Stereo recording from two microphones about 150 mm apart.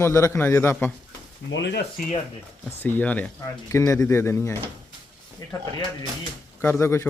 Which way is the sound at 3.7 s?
20° left (ahead or behind).